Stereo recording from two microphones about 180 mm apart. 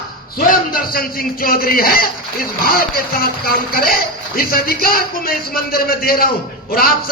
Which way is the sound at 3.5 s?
55° left (ahead or behind).